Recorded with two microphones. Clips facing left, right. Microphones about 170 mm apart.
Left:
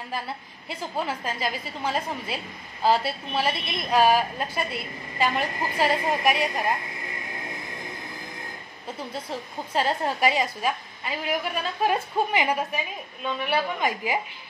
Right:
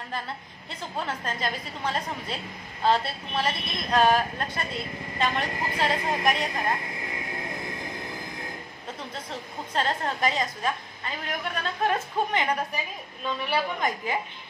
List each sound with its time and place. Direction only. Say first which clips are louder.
0.7 s a woman's voice: left 3 dB; 10° left (ahead or behind)
9.8 s a woman's voice: left 3 dB; 10° left (ahead or behind)